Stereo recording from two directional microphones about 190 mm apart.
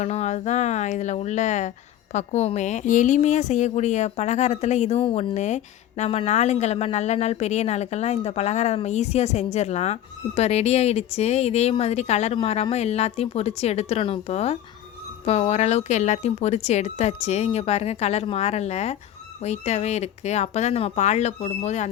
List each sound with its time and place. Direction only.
0.0 s a woman's voice: 35° left (ahead or behind)